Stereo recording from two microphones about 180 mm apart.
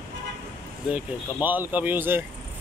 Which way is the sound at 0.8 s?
10° right (ahead or behind).